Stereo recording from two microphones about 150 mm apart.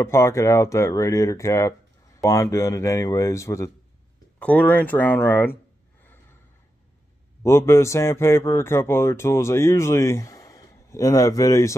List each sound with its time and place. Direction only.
0.0 s speech: 20° left (ahead or behind)
4.4 s speech: 10° left (ahead or behind)
7.4 s speech: 20° left (ahead or behind)